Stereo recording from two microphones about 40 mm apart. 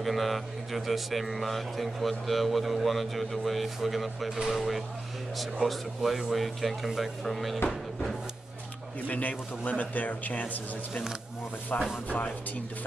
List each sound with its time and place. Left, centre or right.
0.0 s a man's voice: centre
9.0 s speech: left
11.7 s speech: left